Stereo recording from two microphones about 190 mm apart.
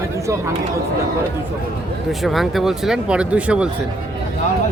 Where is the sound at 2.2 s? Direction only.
Centre (ahead or behind).